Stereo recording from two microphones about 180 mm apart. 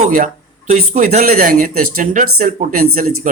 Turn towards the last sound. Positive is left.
turn(degrees=-45)  # may be behind; listen again after turning